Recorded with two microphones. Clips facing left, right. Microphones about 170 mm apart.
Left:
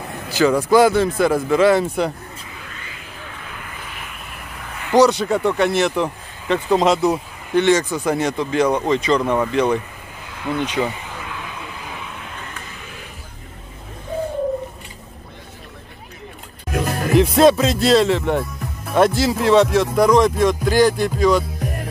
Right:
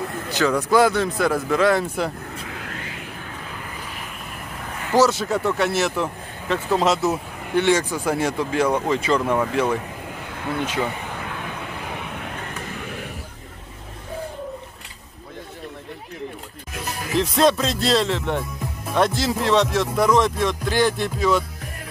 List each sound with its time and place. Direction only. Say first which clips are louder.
0.2 s speech: left 5 dB; 5° left (ahead or behind)
2.3 s a sound: right 4 dB; 65° right (ahead or behind)
4.9 s speech: left 4 dB; centre (ahead or behind)
11.1 s vehicle: right 1 dB; 50° right (ahead or behind)
16.7 s music: left 8 dB; 55° left (ahead or behind)
17.2 s speech: left 5 dB; 5° left (ahead or behind)